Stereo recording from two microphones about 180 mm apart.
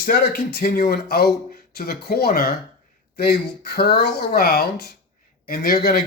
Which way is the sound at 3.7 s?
60° left (ahead or behind).